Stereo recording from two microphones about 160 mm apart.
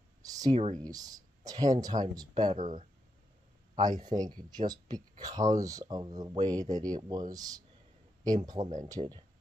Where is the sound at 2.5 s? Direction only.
50° right (ahead or behind).